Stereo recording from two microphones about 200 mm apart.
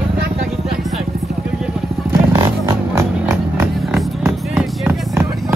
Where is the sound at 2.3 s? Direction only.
15° right (ahead or behind).